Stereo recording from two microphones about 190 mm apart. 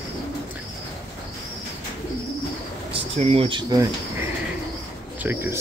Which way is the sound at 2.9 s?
30° right (ahead or behind).